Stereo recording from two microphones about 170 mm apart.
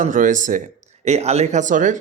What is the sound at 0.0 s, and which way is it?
Speech, 50° right (ahead or behind).